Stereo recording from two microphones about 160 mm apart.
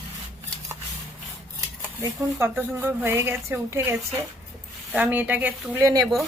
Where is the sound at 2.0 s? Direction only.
15° right (ahead or behind).